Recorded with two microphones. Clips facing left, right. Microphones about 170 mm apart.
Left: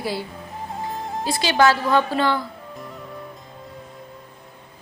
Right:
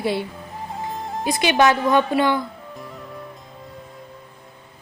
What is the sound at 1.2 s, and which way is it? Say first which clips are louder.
A woman's voice: right 1 dB; 20° right (ahead or behind).